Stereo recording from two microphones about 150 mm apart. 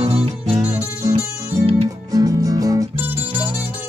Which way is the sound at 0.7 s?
20° right (ahead or behind).